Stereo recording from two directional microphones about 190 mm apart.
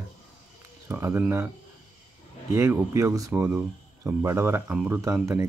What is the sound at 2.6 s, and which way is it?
Speech, 15° right (ahead or behind).